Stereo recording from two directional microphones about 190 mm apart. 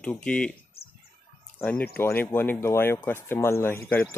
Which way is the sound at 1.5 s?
5° left (ahead or behind).